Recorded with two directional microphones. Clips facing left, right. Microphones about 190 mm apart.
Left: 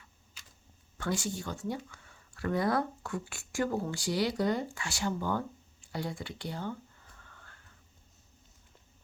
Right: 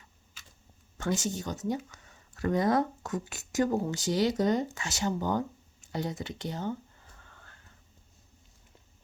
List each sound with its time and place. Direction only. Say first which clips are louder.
0.9 s speech: right 3 dB; 20° right (ahead or behind)